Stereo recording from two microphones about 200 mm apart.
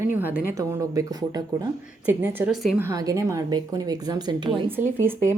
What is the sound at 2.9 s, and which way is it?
A woman's voice, 15° right (ahead or behind).